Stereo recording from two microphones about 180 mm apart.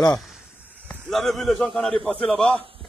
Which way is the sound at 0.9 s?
Centre (ahead or behind).